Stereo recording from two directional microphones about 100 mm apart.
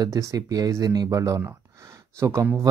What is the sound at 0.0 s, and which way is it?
Speech, 35° right (ahead or behind).